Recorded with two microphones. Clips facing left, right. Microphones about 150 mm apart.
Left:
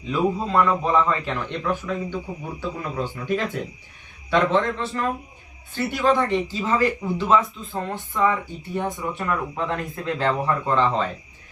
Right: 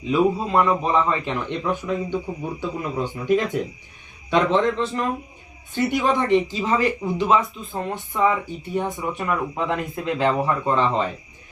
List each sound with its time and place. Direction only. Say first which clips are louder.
0.0 s speech: right 3 dB; 15° right (ahead or behind)